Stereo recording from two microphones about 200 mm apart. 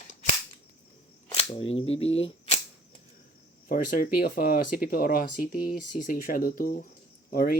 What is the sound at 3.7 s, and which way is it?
Speech, 45° left (ahead or behind).